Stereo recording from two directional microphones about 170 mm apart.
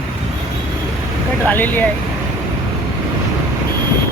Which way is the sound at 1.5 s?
10° left (ahead or behind).